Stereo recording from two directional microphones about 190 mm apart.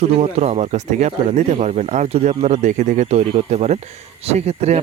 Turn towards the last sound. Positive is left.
turn(degrees=-35)  # may be behind; listen again after turning